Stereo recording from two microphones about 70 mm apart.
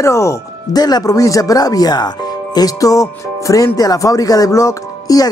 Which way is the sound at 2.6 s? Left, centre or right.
Left.